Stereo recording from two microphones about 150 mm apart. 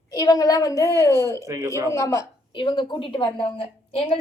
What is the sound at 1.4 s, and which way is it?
Speech, 20° right (ahead or behind).